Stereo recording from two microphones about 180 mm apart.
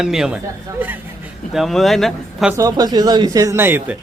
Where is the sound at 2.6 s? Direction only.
20° right (ahead or behind).